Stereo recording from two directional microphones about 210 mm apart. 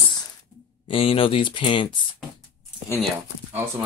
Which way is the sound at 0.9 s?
25° left (ahead or behind).